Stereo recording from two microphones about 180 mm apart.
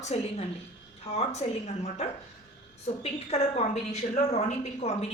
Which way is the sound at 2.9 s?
40° left (ahead or behind).